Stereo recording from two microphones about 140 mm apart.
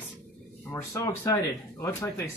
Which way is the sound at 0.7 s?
20° left (ahead or behind).